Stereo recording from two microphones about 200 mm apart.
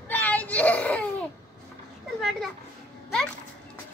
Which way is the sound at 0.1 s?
10° left (ahead or behind).